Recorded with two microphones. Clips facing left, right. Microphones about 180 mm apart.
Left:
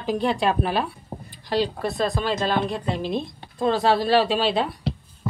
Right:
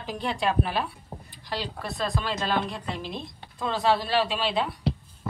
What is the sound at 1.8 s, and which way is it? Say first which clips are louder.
Speech: left 6 dB; 20° left (ahead or behind).